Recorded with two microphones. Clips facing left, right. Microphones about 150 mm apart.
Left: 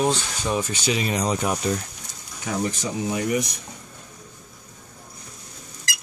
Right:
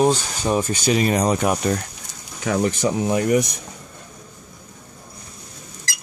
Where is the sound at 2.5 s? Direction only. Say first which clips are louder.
Right 6 dB; 70° right (ahead or behind).